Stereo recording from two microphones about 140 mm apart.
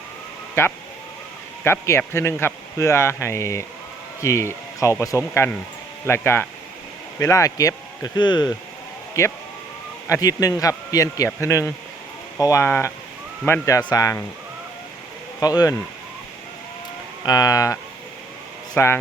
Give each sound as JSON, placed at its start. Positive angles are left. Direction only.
{"t": 0.6, "sound": "speech", "side_deg": 20}
{"t": 9.2, "sound": "speech", "side_deg": 20}
{"t": 15.4, "sound": "speech", "side_deg": 25}
{"t": 17.2, "sound": "speech", "side_deg": 25}
{"t": 18.8, "sound": "speech", "side_deg": 15}